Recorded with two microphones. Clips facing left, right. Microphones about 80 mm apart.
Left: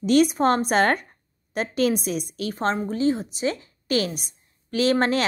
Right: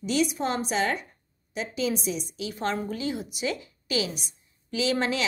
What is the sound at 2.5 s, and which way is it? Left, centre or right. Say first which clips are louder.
A woman's voice: left 5 dB; left.